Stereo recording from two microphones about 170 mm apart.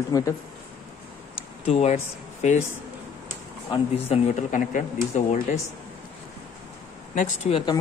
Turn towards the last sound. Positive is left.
turn(degrees=40)  # may be behind; listen again after turning